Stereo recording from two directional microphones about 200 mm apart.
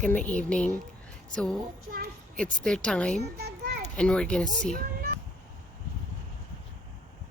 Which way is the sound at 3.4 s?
55° right (ahead or behind).